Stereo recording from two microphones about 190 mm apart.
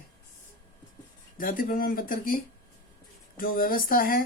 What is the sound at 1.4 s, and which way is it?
Speech, 45° left (ahead or behind).